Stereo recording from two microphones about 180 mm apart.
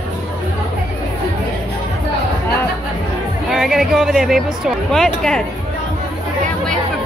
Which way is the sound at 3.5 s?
Centre (ahead or behind).